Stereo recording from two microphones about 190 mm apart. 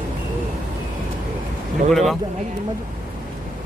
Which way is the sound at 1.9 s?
Centre (ahead or behind).